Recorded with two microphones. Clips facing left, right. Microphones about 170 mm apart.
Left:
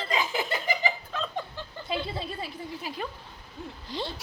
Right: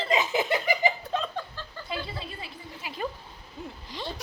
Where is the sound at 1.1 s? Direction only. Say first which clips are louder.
Right 4 dB; 25° right (ahead or behind).